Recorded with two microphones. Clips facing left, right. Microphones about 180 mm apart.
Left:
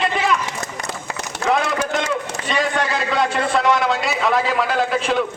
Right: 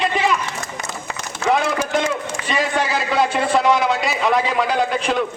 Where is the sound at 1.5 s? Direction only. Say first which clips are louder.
Right 1 dB; centre (ahead or behind).